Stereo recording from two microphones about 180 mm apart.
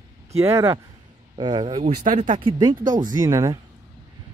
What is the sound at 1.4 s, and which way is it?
Speech, 25° right (ahead or behind).